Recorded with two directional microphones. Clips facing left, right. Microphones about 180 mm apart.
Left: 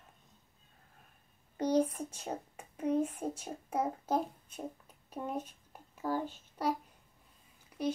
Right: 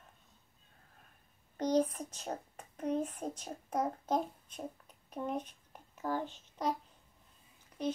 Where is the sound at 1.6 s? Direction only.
10° left (ahead or behind).